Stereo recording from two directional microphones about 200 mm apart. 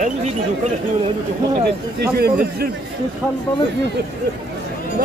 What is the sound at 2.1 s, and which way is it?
Speech, 50° right (ahead or behind).